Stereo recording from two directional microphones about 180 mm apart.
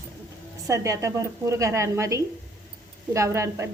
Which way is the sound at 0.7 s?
15° right (ahead or behind).